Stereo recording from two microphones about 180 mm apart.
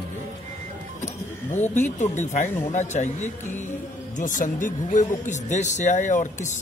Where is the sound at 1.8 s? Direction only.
40° left (ahead or behind).